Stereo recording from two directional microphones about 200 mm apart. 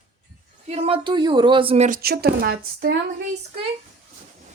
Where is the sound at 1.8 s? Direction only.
45° right (ahead or behind).